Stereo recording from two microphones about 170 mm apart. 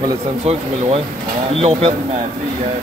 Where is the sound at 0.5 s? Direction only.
35° right (ahead or behind).